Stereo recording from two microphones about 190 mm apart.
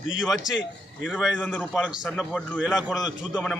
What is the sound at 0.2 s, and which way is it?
A man's voice, 5° right (ahead or behind).